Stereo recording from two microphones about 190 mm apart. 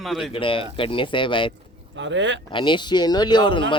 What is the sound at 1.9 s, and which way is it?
Speech, 75° right (ahead or behind).